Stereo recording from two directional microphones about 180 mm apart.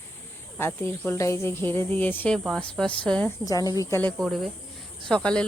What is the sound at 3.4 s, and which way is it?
Speech, 20° left (ahead or behind).